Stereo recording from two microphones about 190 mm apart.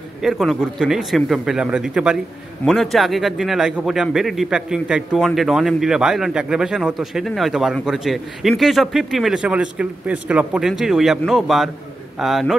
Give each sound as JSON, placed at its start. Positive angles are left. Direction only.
{"t": 0.2, "sound": "a man's voice", "side_deg": 0}